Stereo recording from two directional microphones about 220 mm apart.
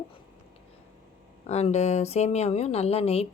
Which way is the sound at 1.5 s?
30° left (ahead or behind).